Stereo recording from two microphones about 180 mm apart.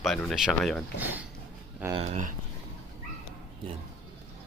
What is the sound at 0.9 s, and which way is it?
Speech, 10° right (ahead or behind).